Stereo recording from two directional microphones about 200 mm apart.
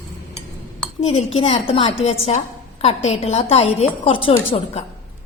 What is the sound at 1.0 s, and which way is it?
A woman's voice, 30° left (ahead or behind).